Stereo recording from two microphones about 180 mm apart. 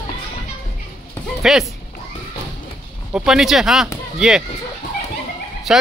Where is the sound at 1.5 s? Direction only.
Centre (ahead or behind).